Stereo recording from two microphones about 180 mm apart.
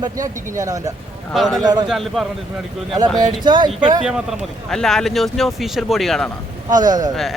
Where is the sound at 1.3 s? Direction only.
Centre (ahead or behind).